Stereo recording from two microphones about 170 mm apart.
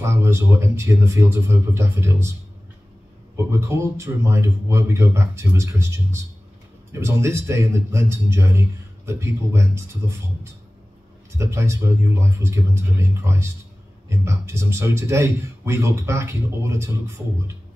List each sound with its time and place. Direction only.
0.0 s a man's voice: 15° right (ahead or behind)
3.3 s a man's voice: 15° right (ahead or behind)